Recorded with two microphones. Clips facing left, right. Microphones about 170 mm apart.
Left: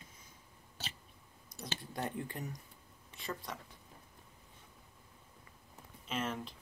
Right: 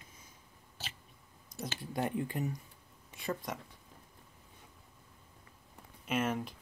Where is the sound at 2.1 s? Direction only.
10° right (ahead or behind).